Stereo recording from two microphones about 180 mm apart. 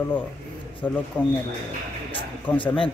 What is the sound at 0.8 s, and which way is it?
Speech, 10° left (ahead or behind).